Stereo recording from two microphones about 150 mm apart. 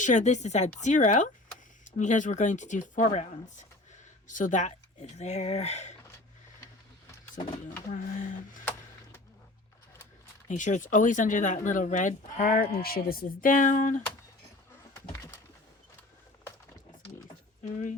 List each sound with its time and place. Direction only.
0.0 s speech: 55° left (ahead or behind)
7.9 s speech: 60° left (ahead or behind)
10.5 s speech: 55° left (ahead or behind)